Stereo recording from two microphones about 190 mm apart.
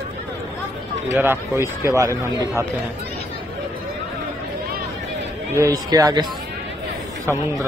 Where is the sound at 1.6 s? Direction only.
15° right (ahead or behind).